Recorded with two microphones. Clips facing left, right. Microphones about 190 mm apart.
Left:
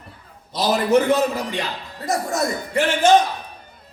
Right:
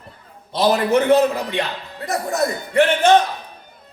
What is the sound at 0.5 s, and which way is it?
A man's voice, 60° right (ahead or behind).